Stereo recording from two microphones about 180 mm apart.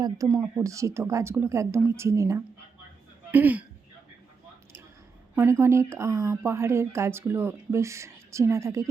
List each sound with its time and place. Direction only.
0.0 s speech: 20° right (ahead or behind)
5.3 s speech: 10° right (ahead or behind)